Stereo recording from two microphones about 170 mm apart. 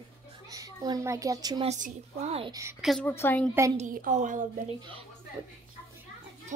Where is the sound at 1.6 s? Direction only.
40° right (ahead or behind).